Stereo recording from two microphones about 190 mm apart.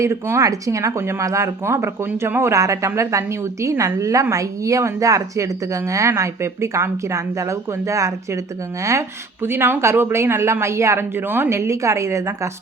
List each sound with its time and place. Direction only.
0.0 s speech: 15° right (ahead or behind)